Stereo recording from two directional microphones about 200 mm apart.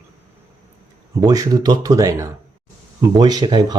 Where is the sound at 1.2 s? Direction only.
20° right (ahead or behind).